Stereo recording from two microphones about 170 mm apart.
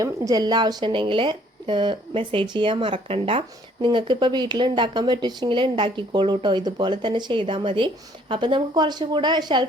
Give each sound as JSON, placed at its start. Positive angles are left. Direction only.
{"t": 0.0, "sound": "speech", "side_deg": -20}